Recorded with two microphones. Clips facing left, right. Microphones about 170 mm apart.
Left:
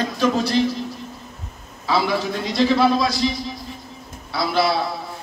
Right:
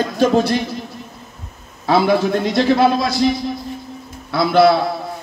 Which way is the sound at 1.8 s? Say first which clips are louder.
Right 6 dB; 55° right (ahead or behind).